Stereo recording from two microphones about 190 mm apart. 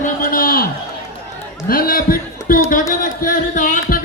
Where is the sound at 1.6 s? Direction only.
50° left (ahead or behind).